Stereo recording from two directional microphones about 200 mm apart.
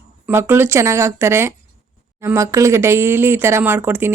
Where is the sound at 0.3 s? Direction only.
10° right (ahead or behind).